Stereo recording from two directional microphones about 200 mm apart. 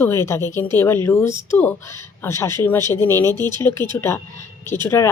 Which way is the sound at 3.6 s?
15° left (ahead or behind).